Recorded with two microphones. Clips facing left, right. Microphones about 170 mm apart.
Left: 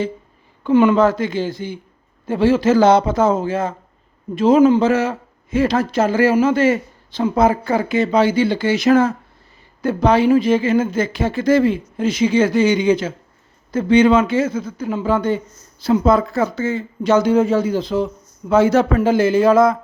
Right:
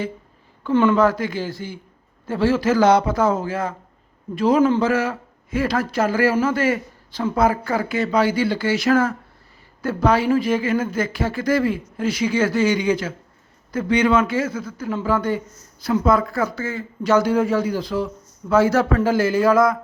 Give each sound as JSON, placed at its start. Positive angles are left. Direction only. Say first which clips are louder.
{"t": 0.6, "sound": "a man's voice", "louder": "left 3 dB", "side_deg": 15}